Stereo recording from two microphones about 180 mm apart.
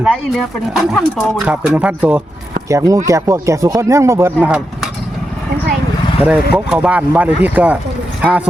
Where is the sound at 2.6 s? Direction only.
20° right (ahead or behind).